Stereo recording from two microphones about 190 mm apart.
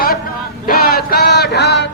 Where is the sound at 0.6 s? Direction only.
55° left (ahead or behind).